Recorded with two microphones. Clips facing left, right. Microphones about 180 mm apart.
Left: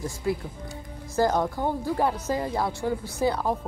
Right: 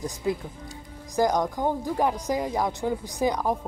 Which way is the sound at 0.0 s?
20° right (ahead or behind).